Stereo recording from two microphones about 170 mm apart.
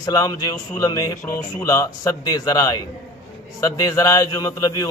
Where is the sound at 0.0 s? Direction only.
20° left (ahead or behind).